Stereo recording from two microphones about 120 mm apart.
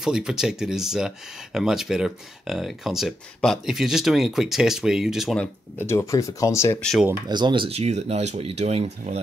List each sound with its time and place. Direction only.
0.0 s speech: 5° right (ahead or behind)
5.8 s speech: 25° left (ahead or behind)
6.8 s speech: 5° left (ahead or behind)
7.2 s speech: 40° right (ahead or behind)
7.7 s speech: 65° right (ahead or behind)